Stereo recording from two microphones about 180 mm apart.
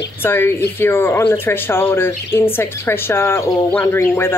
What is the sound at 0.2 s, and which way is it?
Speech, 10° left (ahead or behind).